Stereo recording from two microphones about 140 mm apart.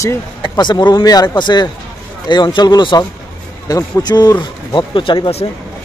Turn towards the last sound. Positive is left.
turn(degrees=35)  # may be behind; listen again after turning